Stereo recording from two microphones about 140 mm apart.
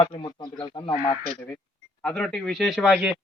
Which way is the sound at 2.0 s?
5° left (ahead or behind).